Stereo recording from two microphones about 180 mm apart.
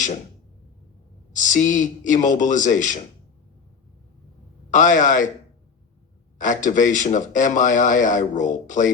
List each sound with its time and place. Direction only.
1.3 s speech: 45° left (ahead or behind)
4.7 s speech: 45° left (ahead or behind)
6.4 s speech: 45° left (ahead or behind)